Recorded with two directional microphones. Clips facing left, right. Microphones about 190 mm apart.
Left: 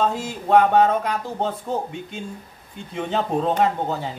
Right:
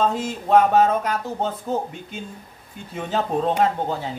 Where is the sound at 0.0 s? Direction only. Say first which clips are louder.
Right 1 dB; centre (ahead or behind).